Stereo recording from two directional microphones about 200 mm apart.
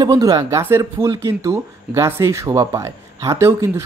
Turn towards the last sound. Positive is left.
turn(degrees=-15)  # may be behind; listen again after turning